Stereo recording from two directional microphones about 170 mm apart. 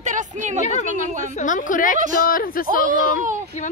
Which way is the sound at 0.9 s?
50° right (ahead or behind).